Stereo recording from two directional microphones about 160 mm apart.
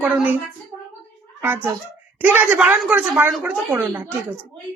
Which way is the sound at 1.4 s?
15° right (ahead or behind).